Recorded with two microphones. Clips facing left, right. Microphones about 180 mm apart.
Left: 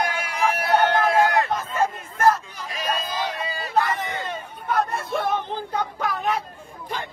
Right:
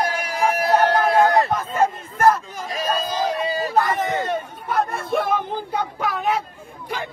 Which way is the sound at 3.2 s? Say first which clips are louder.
Right 7 dB; 40° right (ahead or behind).